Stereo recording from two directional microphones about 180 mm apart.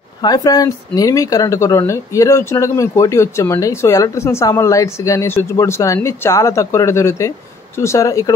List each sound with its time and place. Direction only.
0.2 s speech: 20° left (ahead or behind)